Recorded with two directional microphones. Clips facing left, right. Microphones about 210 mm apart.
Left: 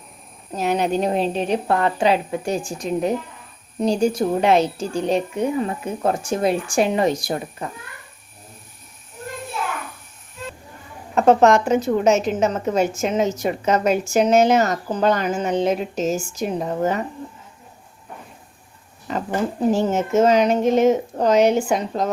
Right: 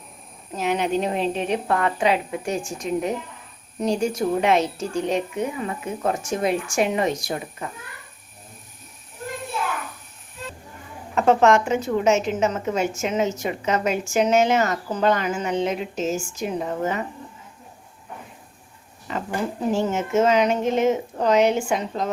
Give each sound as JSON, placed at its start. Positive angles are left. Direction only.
{"t": 0.5, "sound": "a woman's voice", "side_deg": 35}
{"t": 11.1, "sound": "a woman's voice", "side_deg": 40}
{"t": 19.1, "sound": "a woman's voice", "side_deg": 40}